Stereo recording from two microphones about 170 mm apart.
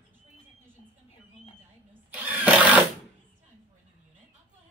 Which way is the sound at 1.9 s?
10° right (ahead or behind).